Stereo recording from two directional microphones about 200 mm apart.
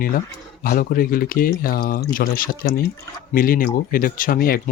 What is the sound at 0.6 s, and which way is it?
Speech, 45° left (ahead or behind).